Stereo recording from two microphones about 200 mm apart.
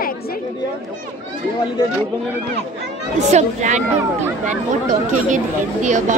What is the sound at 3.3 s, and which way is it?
Speech, 35° right (ahead or behind).